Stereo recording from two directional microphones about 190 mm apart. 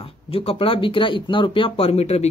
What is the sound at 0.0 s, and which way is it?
Speech, 30° left (ahead or behind).